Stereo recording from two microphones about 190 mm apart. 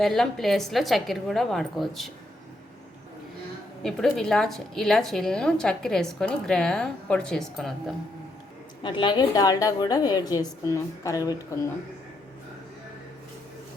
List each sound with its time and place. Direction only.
0.0 s a woman's voice: centre (ahead or behind)
3.8 s a woman's voice: 5° left (ahead or behind)
8.8 s a woman's voice: 25° left (ahead or behind)